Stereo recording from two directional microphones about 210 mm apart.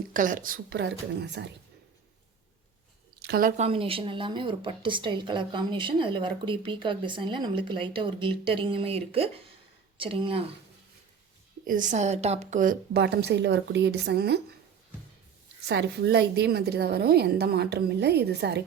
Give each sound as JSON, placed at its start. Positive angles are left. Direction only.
{"t": 0.1, "sound": "a woman's voice", "side_deg": -40}
{"t": 3.2, "sound": "a sound", "side_deg": -50}
{"t": 3.6, "sound": "a woman's voice", "side_deg": -25}
{"t": 11.6, "sound": "a woman's voice", "side_deg": -40}
{"t": 15.6, "sound": "a woman's voice", "side_deg": -55}